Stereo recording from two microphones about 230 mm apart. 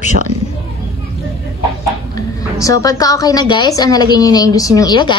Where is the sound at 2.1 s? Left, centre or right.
Centre.